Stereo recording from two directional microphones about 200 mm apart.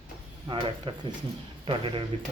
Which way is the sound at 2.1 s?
30° right (ahead or behind).